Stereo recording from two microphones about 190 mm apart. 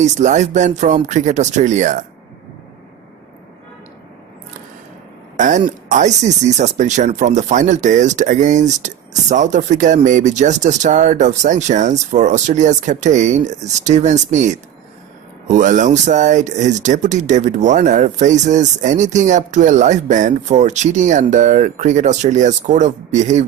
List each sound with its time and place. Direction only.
0.0 s speech: 40° right (ahead or behind)
5.4 s speech: 40° right (ahead or behind)